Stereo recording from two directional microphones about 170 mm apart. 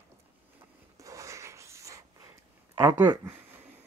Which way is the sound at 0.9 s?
20° right (ahead or behind).